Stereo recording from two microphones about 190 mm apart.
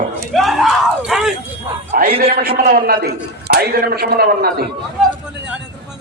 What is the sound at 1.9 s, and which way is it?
A man's voice, 50° right (ahead or behind).